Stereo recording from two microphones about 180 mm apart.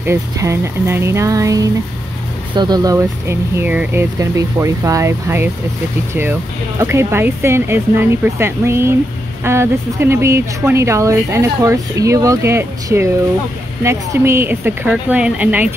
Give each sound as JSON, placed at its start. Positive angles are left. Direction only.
{"t": 0.0, "sound": "speech", "side_deg": -15}
{"t": 6.8, "sound": "speech", "side_deg": -15}